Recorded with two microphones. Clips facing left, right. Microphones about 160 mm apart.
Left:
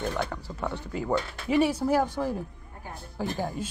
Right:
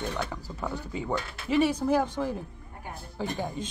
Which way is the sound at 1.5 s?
10° left (ahead or behind).